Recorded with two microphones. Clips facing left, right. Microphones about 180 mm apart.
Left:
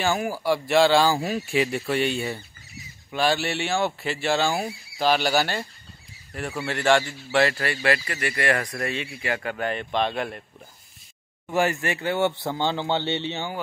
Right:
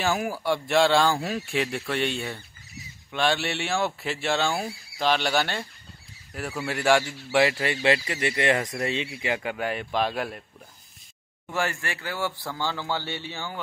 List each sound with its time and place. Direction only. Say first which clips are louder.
0.0 s speech: left 2 dB; centre (ahead or behind)
11.5 s a man's voice: left 6 dB; 20° left (ahead or behind)